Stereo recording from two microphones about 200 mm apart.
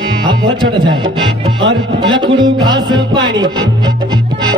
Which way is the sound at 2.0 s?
25° right (ahead or behind).